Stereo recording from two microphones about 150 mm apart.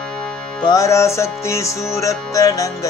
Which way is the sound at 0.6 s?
20° left (ahead or behind).